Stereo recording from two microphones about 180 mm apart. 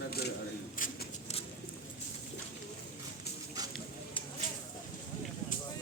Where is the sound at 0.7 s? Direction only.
50° left (ahead or behind).